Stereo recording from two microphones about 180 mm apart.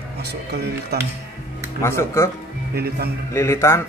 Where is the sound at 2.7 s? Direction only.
60° right (ahead or behind).